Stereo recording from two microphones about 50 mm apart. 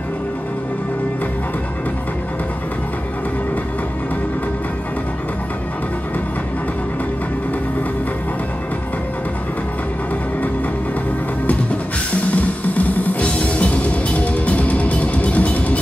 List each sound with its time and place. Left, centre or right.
12.4 s music: left